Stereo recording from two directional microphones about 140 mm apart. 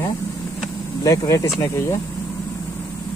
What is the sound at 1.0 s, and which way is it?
Speech, 25° left (ahead or behind).